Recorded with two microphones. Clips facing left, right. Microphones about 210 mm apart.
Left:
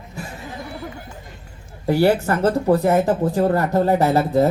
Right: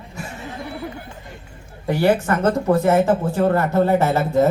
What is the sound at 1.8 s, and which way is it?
Speech, 35° left (ahead or behind).